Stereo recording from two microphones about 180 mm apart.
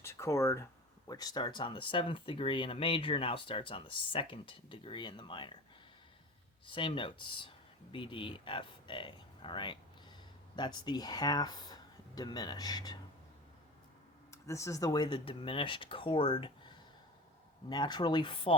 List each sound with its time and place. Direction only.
0.0 s speech: 15° left (ahead or behind)
6.7 s speech: 30° left (ahead or behind)
14.3 s speech: 15° left (ahead or behind)